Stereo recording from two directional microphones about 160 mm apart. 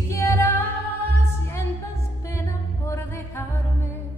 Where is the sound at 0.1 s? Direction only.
15° left (ahead or behind).